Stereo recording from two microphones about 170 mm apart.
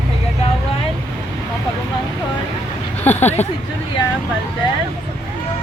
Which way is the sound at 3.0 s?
10° left (ahead or behind).